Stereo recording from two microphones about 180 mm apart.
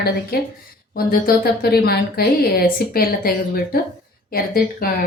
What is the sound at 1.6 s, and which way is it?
A woman's voice, 60° left (ahead or behind).